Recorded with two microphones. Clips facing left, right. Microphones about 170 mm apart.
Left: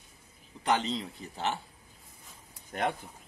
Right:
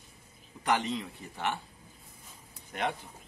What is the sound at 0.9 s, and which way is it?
Speech, 30° left (ahead or behind).